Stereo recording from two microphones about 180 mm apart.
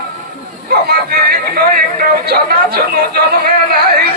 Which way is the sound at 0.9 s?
60° right (ahead or behind).